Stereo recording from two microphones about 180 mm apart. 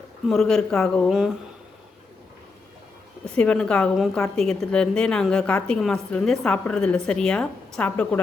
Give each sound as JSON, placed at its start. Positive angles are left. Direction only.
{"t": 0.3, "sound": "a woman's voice", "side_deg": 0}
{"t": 3.2, "sound": "a woman's voice", "side_deg": 5}